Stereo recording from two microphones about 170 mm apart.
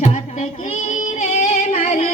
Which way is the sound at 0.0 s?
45° left (ahead or behind).